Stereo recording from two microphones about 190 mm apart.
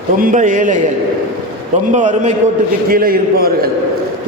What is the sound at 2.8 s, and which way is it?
Speech, 50° right (ahead or behind).